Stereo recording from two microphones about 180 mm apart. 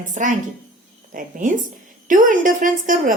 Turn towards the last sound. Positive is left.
turn(degrees=-45)  # may be behind; listen again after turning